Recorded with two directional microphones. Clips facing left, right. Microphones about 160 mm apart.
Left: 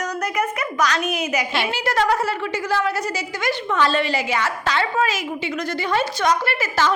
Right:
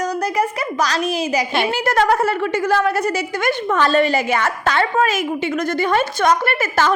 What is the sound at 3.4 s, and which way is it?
A woman's voice, 50° right (ahead or behind).